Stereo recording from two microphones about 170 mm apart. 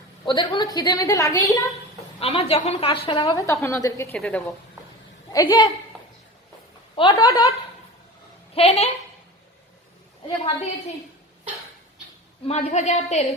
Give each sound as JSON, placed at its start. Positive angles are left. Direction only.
{"t": 0.3, "sound": "a woman's voice", "side_deg": 25}
{"t": 2.2, "sound": "a woman's voice", "side_deg": 35}
{"t": 3.3, "sound": "a woman's voice", "side_deg": 15}
{"t": 5.3, "sound": "a woman's voice", "side_deg": 20}
{"t": 5.9, "sound": "a sound", "side_deg": 5}
{"t": 6.9, "sound": "a woman's voice", "side_deg": 30}
{"t": 8.5, "sound": "a woman's voice", "side_deg": 35}
{"t": 12.5, "sound": "a woman's voice", "side_deg": 40}